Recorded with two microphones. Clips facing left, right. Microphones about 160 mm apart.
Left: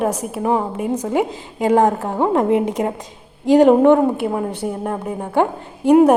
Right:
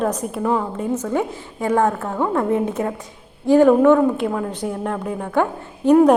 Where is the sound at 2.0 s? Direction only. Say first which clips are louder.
Left 3 dB; 30° left (ahead or behind).